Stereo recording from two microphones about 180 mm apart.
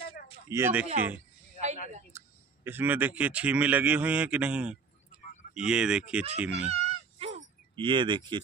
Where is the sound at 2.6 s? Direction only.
10° right (ahead or behind).